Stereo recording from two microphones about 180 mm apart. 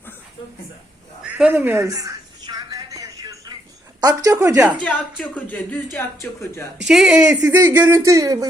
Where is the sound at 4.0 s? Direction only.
20° right (ahead or behind).